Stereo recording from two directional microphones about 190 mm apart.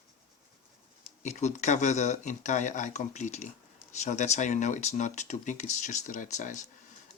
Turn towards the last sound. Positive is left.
turn(degrees=40)  # may be behind; listen again after turning